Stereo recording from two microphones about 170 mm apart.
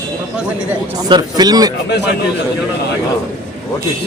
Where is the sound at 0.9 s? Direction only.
25° right (ahead or behind).